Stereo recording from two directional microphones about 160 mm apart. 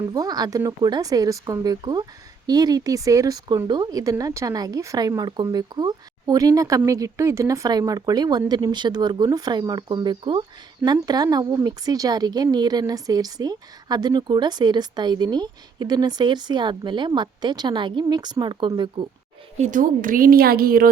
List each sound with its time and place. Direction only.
0.1 s speech: 25° right (ahead or behind)
19.5 s a woman's voice: 50° right (ahead or behind); by 20.8 s 70° right (ahead or behind)